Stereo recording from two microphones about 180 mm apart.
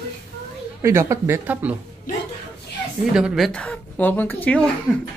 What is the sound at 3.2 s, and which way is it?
Speech, centre (ahead or behind).